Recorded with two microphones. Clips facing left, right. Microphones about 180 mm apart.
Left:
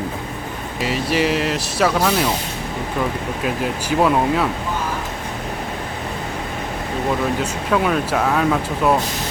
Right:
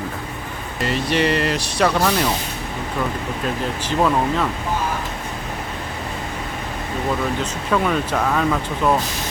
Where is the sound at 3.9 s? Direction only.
10° left (ahead or behind).